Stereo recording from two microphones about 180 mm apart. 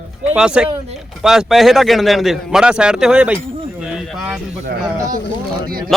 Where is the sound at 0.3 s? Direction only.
5° right (ahead or behind).